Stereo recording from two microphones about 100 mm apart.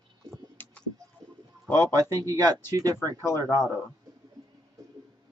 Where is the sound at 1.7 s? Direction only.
40° right (ahead or behind).